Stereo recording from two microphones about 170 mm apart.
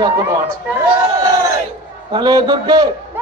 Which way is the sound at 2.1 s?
25° right (ahead or behind).